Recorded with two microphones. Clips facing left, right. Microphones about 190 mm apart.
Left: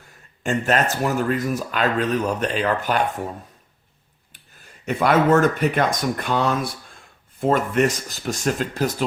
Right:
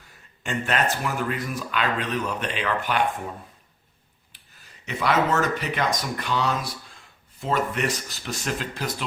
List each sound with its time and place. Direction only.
0.4 s speech: 40° left (ahead or behind)
4.9 s speech: 50° left (ahead or behind)